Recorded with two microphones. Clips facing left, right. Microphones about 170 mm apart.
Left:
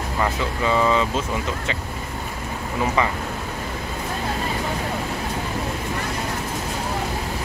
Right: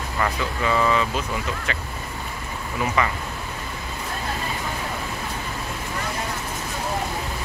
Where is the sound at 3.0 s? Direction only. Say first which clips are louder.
Left 1 dB; 25° left (ahead or behind).